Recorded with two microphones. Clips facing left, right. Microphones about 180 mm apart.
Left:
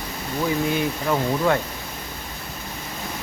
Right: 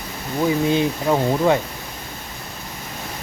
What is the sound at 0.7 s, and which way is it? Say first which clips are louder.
Speech: right 4 dB; 20° right (ahead or behind).